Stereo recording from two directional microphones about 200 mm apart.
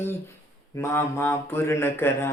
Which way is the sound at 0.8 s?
10° left (ahead or behind).